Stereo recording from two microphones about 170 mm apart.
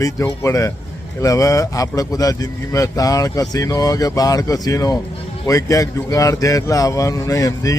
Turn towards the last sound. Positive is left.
turn(degrees=20)  # may be behind; listen again after turning